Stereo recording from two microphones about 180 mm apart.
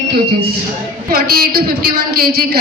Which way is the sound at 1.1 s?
55° right (ahead or behind).